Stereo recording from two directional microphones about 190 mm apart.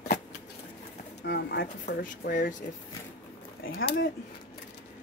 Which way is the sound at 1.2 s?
55° left (ahead or behind).